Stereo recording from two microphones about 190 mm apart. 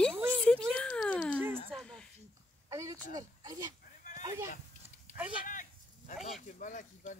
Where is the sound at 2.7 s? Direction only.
15° right (ahead or behind).